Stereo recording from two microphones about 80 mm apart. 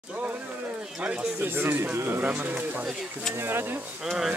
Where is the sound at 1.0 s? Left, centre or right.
Right.